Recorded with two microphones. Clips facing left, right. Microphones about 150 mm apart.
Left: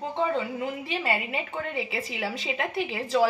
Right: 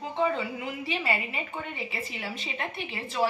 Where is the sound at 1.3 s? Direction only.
90° left.